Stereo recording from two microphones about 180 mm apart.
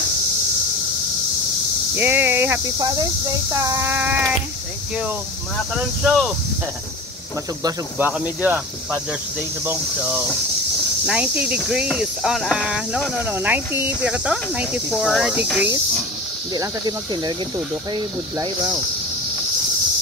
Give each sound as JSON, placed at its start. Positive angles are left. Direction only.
{"t": 2.0, "sound": "speech", "side_deg": -10}
{"t": 6.0, "sound": "speech", "side_deg": 0}
{"t": 8.0, "sound": "speech", "side_deg": -10}
{"t": 16.5, "sound": "speech", "side_deg": -20}